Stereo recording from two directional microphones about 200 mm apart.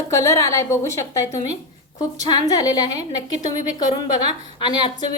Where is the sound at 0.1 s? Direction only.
15° left (ahead or behind).